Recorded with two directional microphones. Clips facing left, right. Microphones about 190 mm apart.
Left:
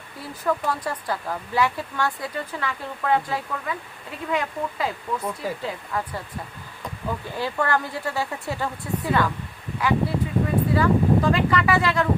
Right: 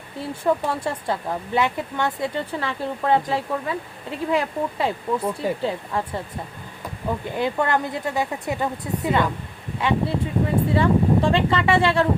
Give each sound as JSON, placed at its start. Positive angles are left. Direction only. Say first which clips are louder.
{"t": 0.2, "sound": "speech", "louder": "right 4 dB", "side_deg": -25}
{"t": 7.3, "sound": "speech", "louder": "right 2 dB", "side_deg": -20}